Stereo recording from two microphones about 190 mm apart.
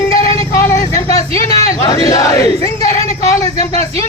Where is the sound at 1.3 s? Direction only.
30° right (ahead or behind).